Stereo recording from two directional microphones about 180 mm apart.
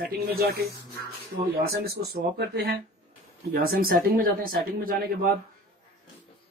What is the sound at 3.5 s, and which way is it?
Speech, 55° right (ahead or behind).